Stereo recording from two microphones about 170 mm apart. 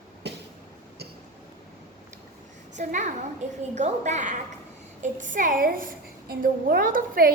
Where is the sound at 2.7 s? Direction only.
45° right (ahead or behind).